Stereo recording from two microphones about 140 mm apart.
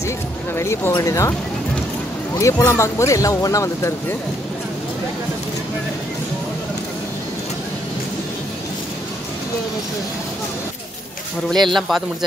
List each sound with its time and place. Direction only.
0.6 s speech: 20° left (ahead or behind)
2.3 s speech: 20° left (ahead or behind)
11.5 s speech: centre (ahead or behind)